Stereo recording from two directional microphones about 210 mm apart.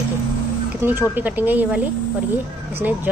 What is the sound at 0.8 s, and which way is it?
Speech, 10° right (ahead or behind).